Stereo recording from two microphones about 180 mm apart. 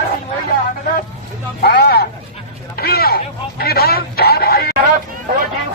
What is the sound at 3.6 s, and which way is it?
Telephone, 60° left (ahead or behind).